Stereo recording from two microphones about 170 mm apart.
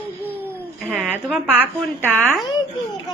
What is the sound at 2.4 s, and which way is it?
Babbling, 25° left (ahead or behind).